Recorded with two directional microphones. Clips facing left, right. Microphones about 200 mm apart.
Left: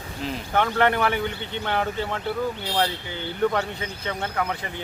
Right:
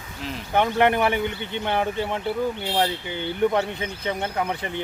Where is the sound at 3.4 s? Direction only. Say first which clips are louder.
Right 2 dB; 20° right (ahead or behind).